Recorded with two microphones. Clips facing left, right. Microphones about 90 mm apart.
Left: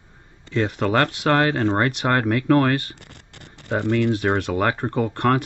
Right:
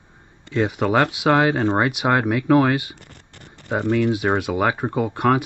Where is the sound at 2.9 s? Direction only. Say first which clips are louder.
Even; 90° left.